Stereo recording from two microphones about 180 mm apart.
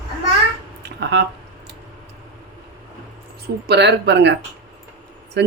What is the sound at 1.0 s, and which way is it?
Squish, 70° right (ahead or behind).